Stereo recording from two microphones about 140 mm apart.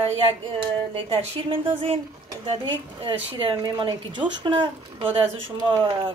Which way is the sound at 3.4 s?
35° right (ahead or behind).